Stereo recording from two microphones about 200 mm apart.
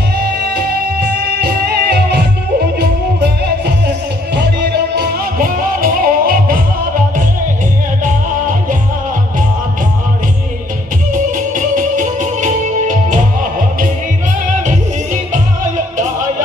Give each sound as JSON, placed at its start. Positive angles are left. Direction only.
{"t": 0.6, "sound": "music", "side_deg": -55}
{"t": 8.0, "sound": "music", "side_deg": -40}
{"t": 11.3, "sound": "music", "side_deg": -40}